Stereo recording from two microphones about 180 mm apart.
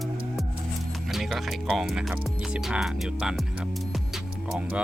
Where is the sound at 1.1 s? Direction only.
Centre (ahead or behind).